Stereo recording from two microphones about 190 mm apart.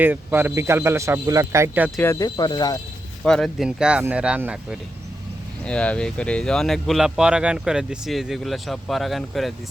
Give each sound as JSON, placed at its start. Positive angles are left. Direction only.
{"t": 0.0, "sound": "speech", "side_deg": -10}
{"t": 2.0, "sound": "speech", "side_deg": 15}
{"t": 3.2, "sound": "speech", "side_deg": 0}
{"t": 5.6, "sound": "speech", "side_deg": 5}